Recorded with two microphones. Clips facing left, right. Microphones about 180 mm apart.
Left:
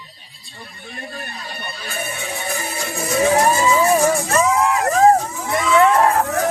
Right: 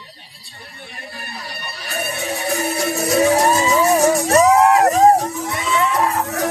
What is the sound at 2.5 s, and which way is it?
Music, 70° right (ahead or behind).